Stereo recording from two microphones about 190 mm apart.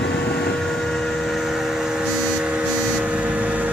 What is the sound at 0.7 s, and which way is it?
Vehicle, centre (ahead or behind).